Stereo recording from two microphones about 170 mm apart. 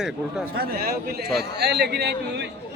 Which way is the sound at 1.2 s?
Centre (ahead or behind).